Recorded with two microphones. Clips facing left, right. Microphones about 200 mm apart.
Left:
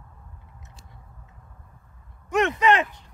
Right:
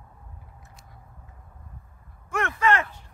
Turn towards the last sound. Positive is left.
turn(degrees=15)  # may be behind; listen again after turning